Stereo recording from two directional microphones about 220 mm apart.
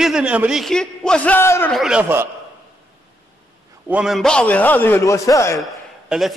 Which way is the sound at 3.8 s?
5° right (ahead or behind).